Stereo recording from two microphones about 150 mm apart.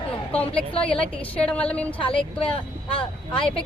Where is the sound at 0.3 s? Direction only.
10° left (ahead or behind).